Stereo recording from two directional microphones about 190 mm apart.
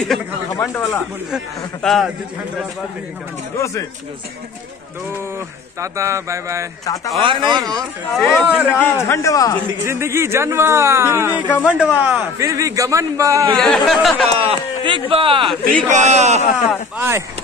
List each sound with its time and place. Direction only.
0.6 s a man's voice: 15° left (ahead or behind)
1.3 s a man's voice: centre (ahead or behind)
3.5 s a man's voice: 15° left (ahead or behind)
5.8 s a man's voice: 15° right (ahead or behind)
7.2 s speech: 25° right (ahead or behind)
8.1 s a man's voice: 5° right (ahead or behind)
8.8 s a man's voice: 15° left (ahead or behind)
9.8 s a man's voice: 15° right (ahead or behind)
13.6 s a man's voice: centre (ahead or behind)
14.4 s a man's voice: 30° right (ahead or behind)
16.5 s a man's voice: 10° right (ahead or behind)